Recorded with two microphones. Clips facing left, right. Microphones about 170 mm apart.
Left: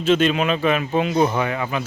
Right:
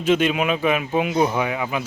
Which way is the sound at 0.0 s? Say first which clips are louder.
Left 1 dB; 10° right (ahead or behind).